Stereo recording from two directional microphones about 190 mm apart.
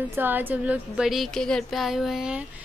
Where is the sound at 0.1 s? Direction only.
10° right (ahead or behind).